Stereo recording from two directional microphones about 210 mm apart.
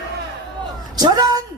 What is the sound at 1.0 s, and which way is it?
Speech, 20° right (ahead or behind).